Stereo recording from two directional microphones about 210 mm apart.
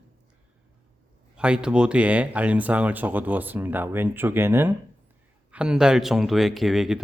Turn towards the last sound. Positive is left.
turn(degrees=0)  # may be behind; listen again after turning